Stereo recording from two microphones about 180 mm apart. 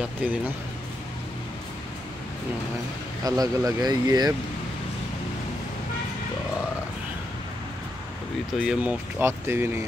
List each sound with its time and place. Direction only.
0.2 s speech: 5° right (ahead or behind)
3.3 s speech: 20° right (ahead or behind)
8.5 s speech: 10° right (ahead or behind)